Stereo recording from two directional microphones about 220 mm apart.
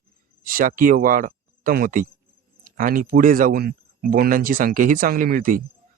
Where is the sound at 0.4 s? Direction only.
40° right (ahead or behind).